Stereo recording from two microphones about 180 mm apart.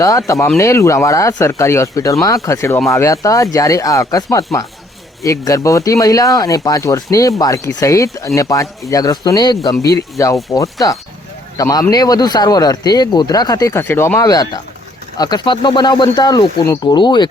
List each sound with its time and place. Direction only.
0.0 s speech: 15° left (ahead or behind)